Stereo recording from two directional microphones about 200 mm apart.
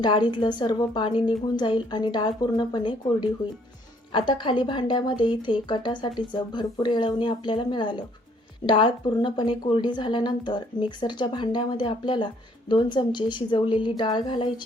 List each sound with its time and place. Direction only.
0.0 s a woman's voice: 25° left (ahead or behind)